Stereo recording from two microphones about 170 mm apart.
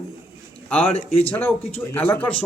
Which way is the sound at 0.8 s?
35° left (ahead or behind).